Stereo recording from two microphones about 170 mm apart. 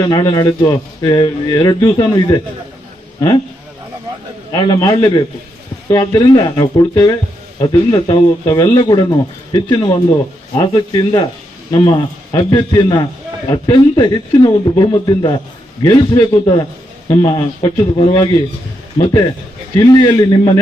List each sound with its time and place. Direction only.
0.0 s a man's voice: 25° left (ahead or behind)
4.5 s a man's voice: 25° left (ahead or behind)
6.0 s a man's voice: 25° left (ahead or behind)
19.9 s a man's voice: 25° left (ahead or behind)